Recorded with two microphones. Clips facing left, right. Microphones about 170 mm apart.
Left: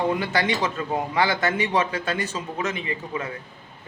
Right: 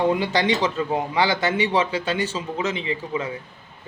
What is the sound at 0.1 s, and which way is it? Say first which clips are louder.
A man's voice: right 3 dB; 15° right (ahead or behind).